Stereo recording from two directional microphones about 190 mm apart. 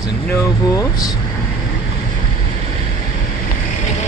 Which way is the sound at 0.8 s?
20° left (ahead or behind).